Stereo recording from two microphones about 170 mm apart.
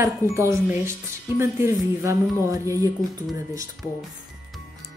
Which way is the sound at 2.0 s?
20° right (ahead or behind).